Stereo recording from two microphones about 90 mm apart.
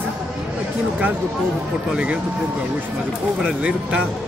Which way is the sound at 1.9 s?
15° right (ahead or behind).